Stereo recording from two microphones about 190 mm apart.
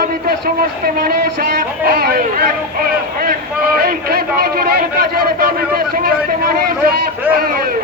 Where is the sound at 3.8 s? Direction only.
50° right (ahead or behind).